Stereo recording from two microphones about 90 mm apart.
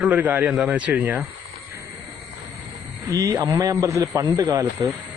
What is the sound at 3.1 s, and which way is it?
A man's voice, 40° right (ahead or behind).